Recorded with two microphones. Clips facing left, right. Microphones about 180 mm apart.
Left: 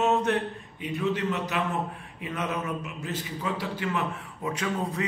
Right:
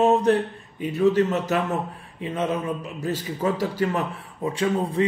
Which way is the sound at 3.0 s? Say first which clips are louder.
Right 9 dB; 40° right (ahead or behind).